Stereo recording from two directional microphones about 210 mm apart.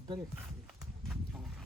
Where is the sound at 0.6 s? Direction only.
Centre (ahead or behind).